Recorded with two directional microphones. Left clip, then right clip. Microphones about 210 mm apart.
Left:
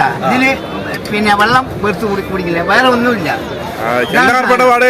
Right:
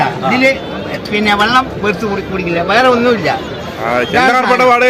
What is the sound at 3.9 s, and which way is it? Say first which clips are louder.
Speech: even; 5° left (ahead or behind).